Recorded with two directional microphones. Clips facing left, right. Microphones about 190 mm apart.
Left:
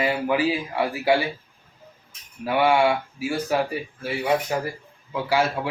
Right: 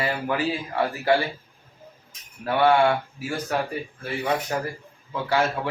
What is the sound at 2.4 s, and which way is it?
A man's voice, 10° left (ahead or behind).